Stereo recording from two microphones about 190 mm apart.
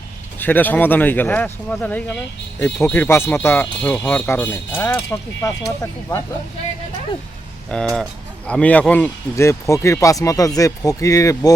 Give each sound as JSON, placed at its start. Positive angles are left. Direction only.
{"t": 0.3, "sound": "speech", "side_deg": 10}
{"t": 7.7, "sound": "speech", "side_deg": 5}